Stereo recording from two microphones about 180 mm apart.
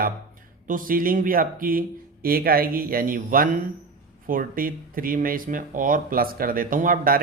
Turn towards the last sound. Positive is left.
turn(degrees=-50)  # may be behind; listen again after turning